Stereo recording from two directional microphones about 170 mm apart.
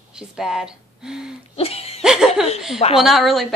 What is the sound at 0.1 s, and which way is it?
Speech, 5° right (ahead or behind).